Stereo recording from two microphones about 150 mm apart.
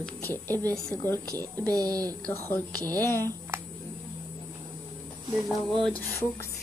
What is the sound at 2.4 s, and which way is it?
Speech, 15° left (ahead or behind).